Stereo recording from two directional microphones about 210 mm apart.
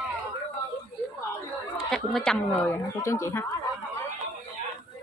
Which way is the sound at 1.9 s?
Centre (ahead or behind).